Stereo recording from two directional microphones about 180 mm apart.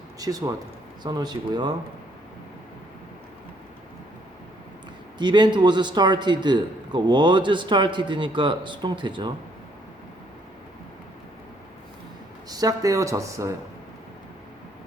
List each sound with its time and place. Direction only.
0.2 s a man's voice: 20° right (ahead or behind)
5.1 s a man's voice: 25° right (ahead or behind)
12.5 s speech: 20° right (ahead or behind)